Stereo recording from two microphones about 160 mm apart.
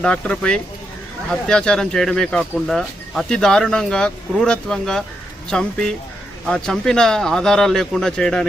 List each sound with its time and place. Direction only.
0.0 s speech: 5° left (ahead or behind)